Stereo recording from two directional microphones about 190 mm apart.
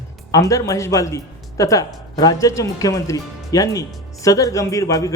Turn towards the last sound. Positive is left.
turn(degrees=15)  # may be behind; listen again after turning